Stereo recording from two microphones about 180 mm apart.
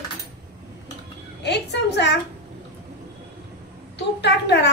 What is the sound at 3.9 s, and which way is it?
Speech, 70° left (ahead or behind).